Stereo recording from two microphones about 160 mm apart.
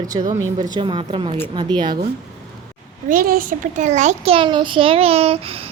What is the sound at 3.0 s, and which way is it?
A child's voice, 65° right (ahead or behind).